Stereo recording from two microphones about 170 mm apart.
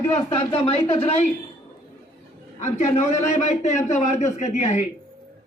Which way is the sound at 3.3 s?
45° left (ahead or behind).